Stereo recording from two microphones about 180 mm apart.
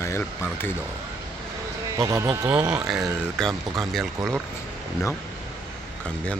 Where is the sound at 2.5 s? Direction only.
5° right (ahead or behind).